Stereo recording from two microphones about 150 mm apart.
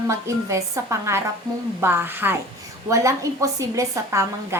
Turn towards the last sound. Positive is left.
turn(degrees=-20)  # may be behind; listen again after turning